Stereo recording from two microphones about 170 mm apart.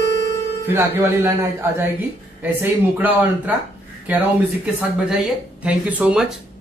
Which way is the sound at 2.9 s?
10° right (ahead or behind).